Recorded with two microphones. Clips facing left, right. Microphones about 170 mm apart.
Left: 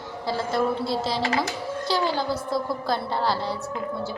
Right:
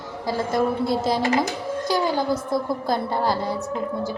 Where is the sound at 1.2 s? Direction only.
20° right (ahead or behind).